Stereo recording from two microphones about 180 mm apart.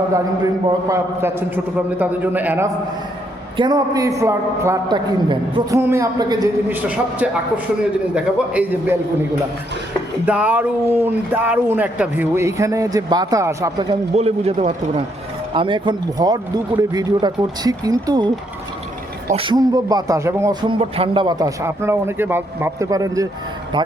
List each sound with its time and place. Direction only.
0.7 s speech: 15° right (ahead or behind)
3.6 s speech: 20° right (ahead or behind)
6.7 s speech: 10° right (ahead or behind)
10.2 s speech: 10° right (ahead or behind)
14.2 s speech: 35° right (ahead or behind)
15.5 s speech: 30° right (ahead or behind)
19.3 s speech: 30° right (ahead or behind)